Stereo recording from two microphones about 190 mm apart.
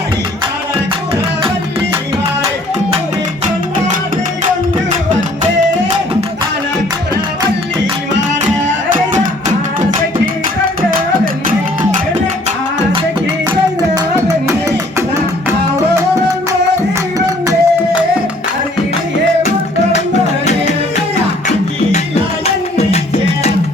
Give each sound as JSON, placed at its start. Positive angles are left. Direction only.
{"t": 8.9, "sound": "music", "side_deg": -40}
{"t": 11.4, "sound": "music", "side_deg": -45}
{"t": 13.9, "sound": "music", "side_deg": -15}
{"t": 17.2, "sound": "music", "side_deg": -15}
{"t": 19.4, "sound": "music", "side_deg": 35}
{"t": 21.9, "sound": "music", "side_deg": 35}